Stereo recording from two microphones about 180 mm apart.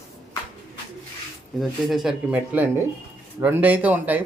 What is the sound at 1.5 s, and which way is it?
Speech, centre (ahead or behind).